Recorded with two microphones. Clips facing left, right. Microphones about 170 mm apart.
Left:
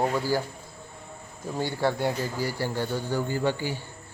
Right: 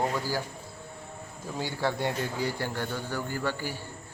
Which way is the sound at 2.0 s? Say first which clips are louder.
Left 2 dB; 5° left (ahead or behind).